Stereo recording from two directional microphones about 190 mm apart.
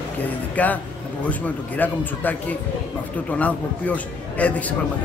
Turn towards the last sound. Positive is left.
turn(degrees=10)  # may be behind; listen again after turning